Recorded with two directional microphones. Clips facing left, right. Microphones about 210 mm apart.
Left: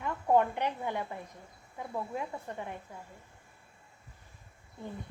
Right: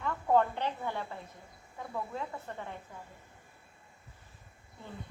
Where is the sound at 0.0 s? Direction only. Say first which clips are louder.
Left 1 dB; 15° left (ahead or behind).